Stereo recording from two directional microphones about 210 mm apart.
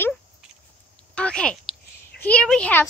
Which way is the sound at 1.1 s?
5° left (ahead or behind).